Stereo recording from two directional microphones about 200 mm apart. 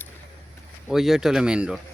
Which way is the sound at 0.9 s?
Centre (ahead or behind).